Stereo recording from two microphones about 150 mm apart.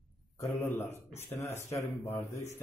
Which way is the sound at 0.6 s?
15° left (ahead or behind).